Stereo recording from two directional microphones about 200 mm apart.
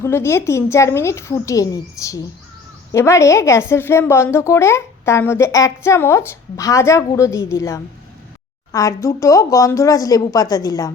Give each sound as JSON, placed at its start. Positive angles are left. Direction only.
{"t": 0.0, "sound": "a woman's voice", "side_deg": 15}